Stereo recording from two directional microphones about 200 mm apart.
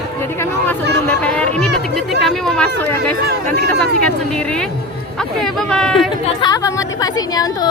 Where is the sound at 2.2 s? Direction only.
5° left (ahead or behind).